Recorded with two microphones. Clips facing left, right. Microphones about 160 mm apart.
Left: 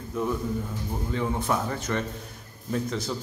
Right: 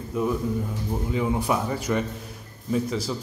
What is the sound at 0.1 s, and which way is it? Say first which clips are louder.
A man's voice: right 3 dB; 5° right (ahead or behind).